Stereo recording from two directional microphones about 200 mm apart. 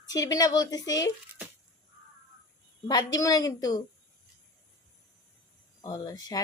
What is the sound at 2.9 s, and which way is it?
Speech, 20° left (ahead or behind).